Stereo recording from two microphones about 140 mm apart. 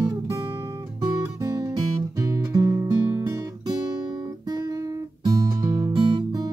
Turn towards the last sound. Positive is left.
turn(degrees=-30)  # may be behind; listen again after turning